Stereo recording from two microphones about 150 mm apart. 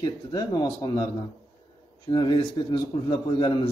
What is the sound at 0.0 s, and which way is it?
Speech, 25° left (ahead or behind).